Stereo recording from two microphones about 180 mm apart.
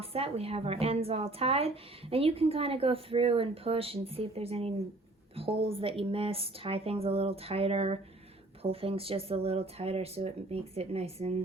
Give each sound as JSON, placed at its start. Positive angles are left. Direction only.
{"t": 0.0, "sound": "a woman's voice", "side_deg": -35}